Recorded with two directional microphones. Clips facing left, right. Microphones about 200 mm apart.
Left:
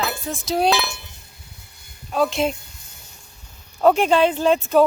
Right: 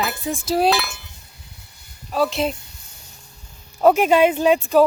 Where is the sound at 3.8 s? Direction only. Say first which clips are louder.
Right 1 dB; 5° right (ahead or behind).